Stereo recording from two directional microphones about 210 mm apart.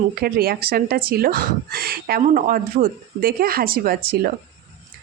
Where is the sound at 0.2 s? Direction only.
45° right (ahead or behind).